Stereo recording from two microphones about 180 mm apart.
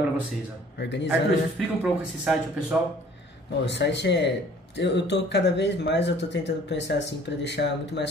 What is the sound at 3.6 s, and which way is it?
Speech, 75° left (ahead or behind).